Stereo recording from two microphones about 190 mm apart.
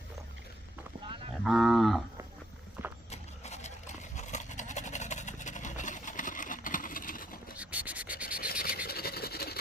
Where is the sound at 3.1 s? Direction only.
35° left (ahead or behind).